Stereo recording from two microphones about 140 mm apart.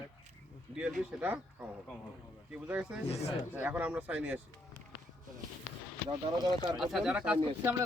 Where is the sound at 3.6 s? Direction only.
15° right (ahead or behind).